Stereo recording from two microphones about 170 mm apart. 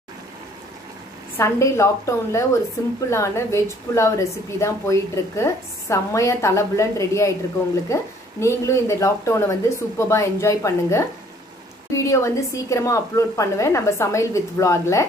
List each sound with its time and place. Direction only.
1.3 s speech: 15° left (ahead or behind)